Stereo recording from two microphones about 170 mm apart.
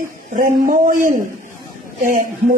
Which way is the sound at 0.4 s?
50° right (ahead or behind).